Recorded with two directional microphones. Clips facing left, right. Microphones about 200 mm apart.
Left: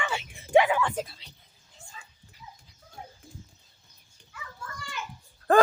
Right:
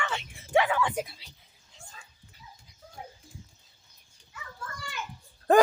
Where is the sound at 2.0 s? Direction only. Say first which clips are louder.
Left 2 dB; 55° right (ahead or behind).